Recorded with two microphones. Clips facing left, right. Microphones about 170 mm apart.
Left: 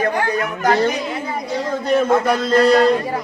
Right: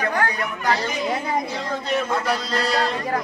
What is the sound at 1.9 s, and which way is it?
Speech, 50° left (ahead or behind).